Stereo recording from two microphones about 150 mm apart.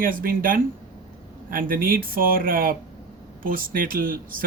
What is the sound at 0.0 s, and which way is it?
A man's voice, 70° right (ahead or behind).